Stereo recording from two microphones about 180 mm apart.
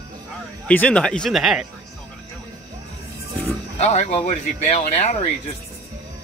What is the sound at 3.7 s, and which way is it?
Speech, 40° left (ahead or behind).